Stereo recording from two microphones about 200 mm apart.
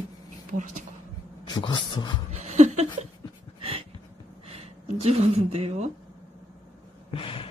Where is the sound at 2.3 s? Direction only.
35° right (ahead or behind).